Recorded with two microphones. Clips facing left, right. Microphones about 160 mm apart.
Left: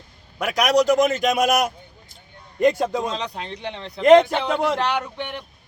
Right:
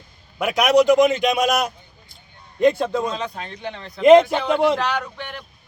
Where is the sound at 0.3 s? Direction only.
Centre (ahead or behind).